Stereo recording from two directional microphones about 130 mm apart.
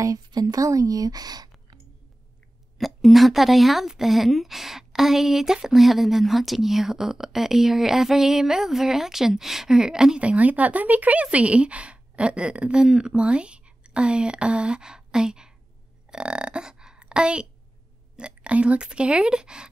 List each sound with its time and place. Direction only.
0.0 s speech: 25° right (ahead or behind)
2.8 s a woman's voice: centre (ahead or behind)